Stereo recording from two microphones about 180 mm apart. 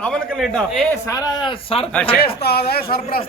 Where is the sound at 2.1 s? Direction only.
60° left (ahead or behind).